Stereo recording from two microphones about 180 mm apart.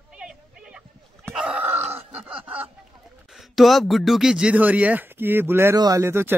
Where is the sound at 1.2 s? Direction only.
5° right (ahead or behind).